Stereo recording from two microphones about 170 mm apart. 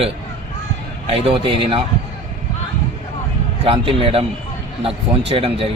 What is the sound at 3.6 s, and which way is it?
Speech, 35° right (ahead or behind).